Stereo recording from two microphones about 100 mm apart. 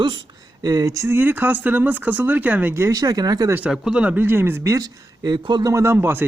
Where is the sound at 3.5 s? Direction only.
15° right (ahead or behind).